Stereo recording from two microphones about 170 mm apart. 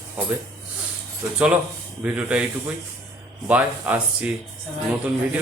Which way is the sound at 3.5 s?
10° right (ahead or behind).